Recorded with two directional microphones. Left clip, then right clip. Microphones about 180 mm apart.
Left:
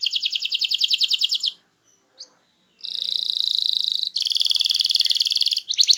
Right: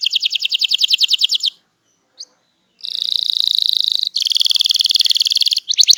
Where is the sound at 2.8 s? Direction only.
45° right (ahead or behind).